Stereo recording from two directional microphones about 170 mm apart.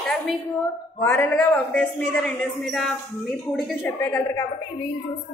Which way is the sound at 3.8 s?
15° left (ahead or behind).